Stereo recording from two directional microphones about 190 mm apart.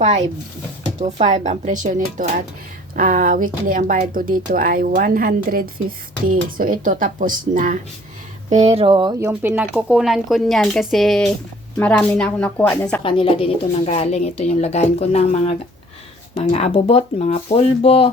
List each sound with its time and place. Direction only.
1.0 s speech: 35° right (ahead or behind)
9.4 s speech: 10° right (ahead or behind)
13.0 s a woman's voice: 30° left (ahead or behind)